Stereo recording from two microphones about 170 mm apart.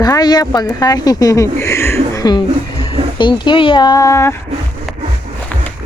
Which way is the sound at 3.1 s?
30° left (ahead or behind).